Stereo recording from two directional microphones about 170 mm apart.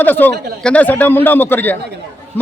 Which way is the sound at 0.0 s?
10° left (ahead or behind).